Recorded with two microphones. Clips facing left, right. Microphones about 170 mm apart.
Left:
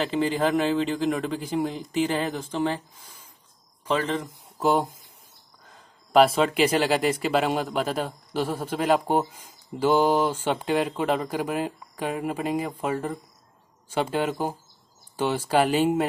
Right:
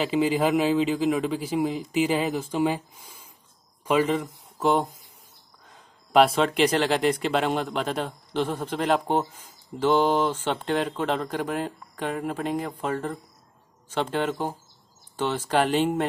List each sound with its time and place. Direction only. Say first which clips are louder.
0.0 s speech: right 1 dB; 5° right (ahead or behind)
4.6 s speech: even; 5° left (ahead or behind)